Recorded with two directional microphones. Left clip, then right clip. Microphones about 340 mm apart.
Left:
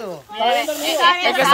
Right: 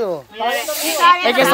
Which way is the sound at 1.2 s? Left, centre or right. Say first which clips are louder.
Right 2 dB; right.